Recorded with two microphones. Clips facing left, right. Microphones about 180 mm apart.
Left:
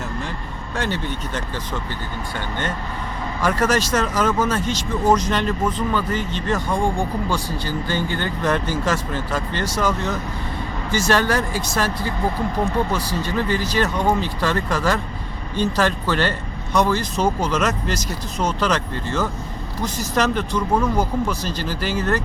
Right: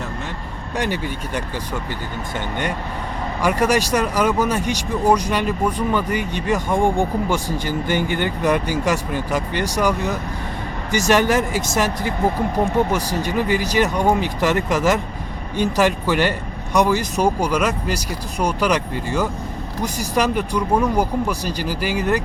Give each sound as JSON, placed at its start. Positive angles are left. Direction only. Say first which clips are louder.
{"t": 0.8, "sound": "speech", "louder": "right 1 dB", "side_deg": -10}
{"t": 3.4, "sound": "speech", "louder": "right 2 dB", "side_deg": -15}